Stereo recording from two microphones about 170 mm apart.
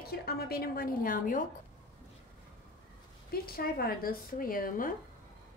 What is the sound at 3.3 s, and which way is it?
A woman's voice, 60° left (ahead or behind).